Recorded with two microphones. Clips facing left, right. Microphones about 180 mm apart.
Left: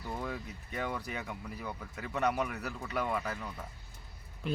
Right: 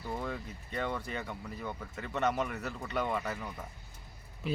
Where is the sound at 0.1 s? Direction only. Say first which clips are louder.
Right 1 dB; centre (ahead or behind).